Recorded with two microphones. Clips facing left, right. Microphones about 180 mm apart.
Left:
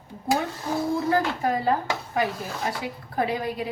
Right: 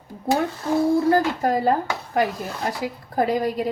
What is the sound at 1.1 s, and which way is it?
A woman's voice, 45° right (ahead or behind).